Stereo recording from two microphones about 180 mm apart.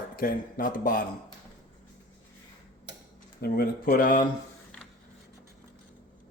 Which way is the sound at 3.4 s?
55° left (ahead or behind).